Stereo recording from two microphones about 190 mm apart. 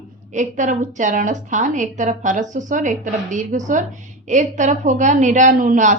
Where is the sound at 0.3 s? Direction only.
40° right (ahead or behind).